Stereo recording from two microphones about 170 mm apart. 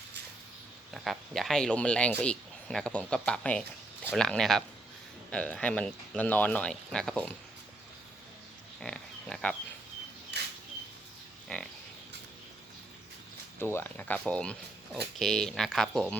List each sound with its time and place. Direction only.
0.9 s speech: centre (ahead or behind)
8.8 s pig: 5° left (ahead or behind)
10.3 s a sound: 80° right
11.5 s pig: 5° left (ahead or behind)
13.6 s speech: 15° left (ahead or behind)